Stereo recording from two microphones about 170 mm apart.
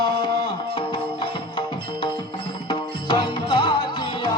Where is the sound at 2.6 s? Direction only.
25° left (ahead or behind).